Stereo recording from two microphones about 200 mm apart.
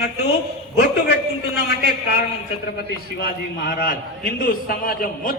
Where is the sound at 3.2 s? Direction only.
50° left (ahead or behind).